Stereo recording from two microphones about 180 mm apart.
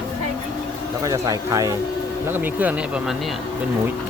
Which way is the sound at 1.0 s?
20° right (ahead or behind).